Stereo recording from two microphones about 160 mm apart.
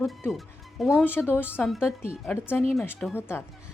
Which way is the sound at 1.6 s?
Centre (ahead or behind).